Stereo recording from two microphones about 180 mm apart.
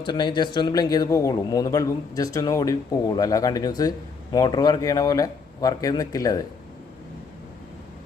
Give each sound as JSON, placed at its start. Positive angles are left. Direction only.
{"t": 0.0, "sound": "a man's voice", "side_deg": 25}